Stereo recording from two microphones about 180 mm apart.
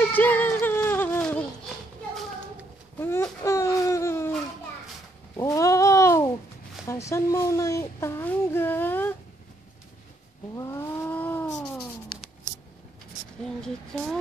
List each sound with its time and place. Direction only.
0.1 s music: 10° left (ahead or behind)
3.0 s baby cry: 15° left (ahead or behind)
5.4 s a sound: 15° left (ahead or behind)
10.5 s vehicle: 20° left (ahead or behind)
13.9 s speech: centre (ahead or behind)